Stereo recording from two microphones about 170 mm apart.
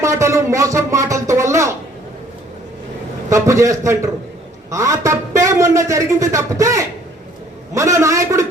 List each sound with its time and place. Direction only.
0.0 s speech: 15° right (ahead or behind)
3.2 s a man's voice: 20° right (ahead or behind)